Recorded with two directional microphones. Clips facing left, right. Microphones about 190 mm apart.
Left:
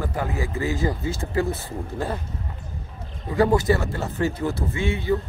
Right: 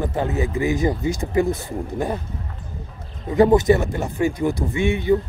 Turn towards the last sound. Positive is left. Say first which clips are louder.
# right 5 dB
turn(degrees=-15)  # may be behind; listen again after turning